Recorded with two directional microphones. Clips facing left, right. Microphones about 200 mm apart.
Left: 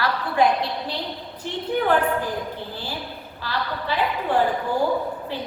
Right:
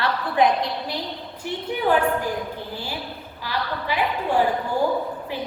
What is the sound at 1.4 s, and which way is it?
Speech, 10° right (ahead or behind).